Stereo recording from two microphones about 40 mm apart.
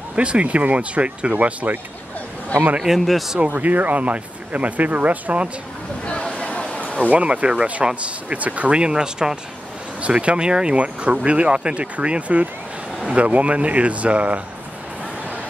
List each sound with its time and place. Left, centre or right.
0.1 s speech: right
2.8 s a man's voice: centre
3.5 s speech: right
6.3 s a sound: left
7.1 s speech: right; by 9.4 s centre
10.0 s speech: right